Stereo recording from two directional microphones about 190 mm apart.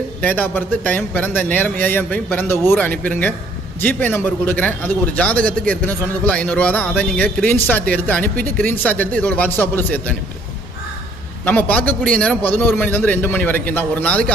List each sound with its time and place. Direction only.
0.2 s a man's voice: 10° left (ahead or behind)
11.4 s a man's voice: 10° left (ahead or behind)